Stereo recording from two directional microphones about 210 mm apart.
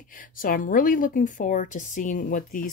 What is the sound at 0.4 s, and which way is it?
A woman's voice, 40° left (ahead or behind).